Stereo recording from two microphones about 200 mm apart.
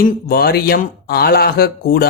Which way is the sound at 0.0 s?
50° left (ahead or behind).